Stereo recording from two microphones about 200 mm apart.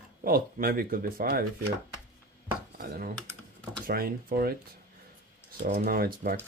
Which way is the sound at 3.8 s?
45° right (ahead or behind).